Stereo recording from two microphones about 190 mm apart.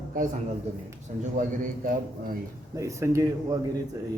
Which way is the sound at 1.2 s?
45° right (ahead or behind).